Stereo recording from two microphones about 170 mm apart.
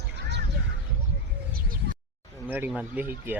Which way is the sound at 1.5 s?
60° right (ahead or behind).